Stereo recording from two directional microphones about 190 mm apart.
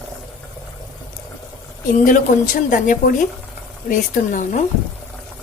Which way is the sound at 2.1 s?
45° left (ahead or behind).